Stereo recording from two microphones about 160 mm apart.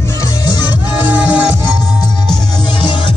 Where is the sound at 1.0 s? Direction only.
10° right (ahead or behind).